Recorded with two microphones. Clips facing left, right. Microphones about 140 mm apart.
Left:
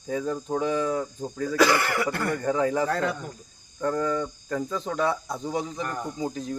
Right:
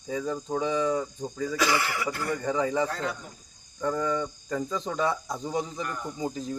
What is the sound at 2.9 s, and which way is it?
Speech, 60° left (ahead or behind).